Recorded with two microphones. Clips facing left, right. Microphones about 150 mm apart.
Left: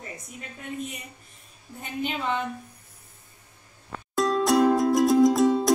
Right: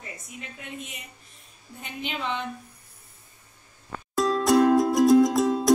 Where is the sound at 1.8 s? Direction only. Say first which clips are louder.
Left 3 dB; 45° left (ahead or behind).